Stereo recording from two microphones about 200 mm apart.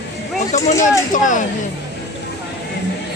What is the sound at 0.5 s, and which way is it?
Speech, 35° left (ahead or behind).